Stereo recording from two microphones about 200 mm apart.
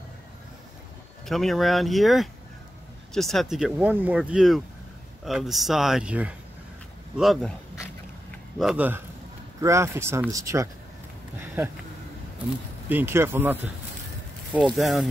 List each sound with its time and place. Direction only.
1.2 s speech: centre (ahead or behind)
8.5 s speech: 5° right (ahead or behind)
12.8 s speech: 10° right (ahead or behind)
14.6 s speech: centre (ahead or behind)